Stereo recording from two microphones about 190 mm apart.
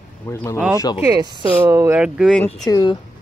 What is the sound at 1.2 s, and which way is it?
Speech, 20° right (ahead or behind).